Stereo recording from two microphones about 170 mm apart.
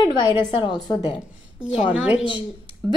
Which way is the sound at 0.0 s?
25° left (ahead or behind).